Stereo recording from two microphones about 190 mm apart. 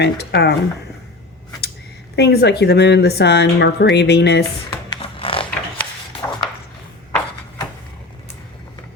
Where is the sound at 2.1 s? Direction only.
60° left (ahead or behind).